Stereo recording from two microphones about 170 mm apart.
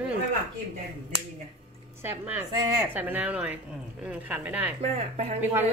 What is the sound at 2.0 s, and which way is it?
Speech, 10° right (ahead or behind).